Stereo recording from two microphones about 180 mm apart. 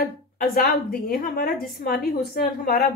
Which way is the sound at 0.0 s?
55° left (ahead or behind).